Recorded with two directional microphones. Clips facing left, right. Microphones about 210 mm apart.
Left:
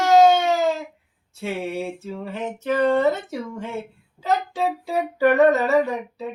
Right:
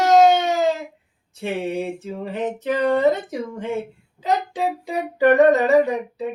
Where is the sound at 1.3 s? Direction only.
20° right (ahead or behind).